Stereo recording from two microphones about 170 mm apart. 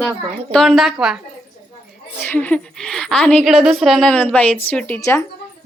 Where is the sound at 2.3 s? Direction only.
10° left (ahead or behind).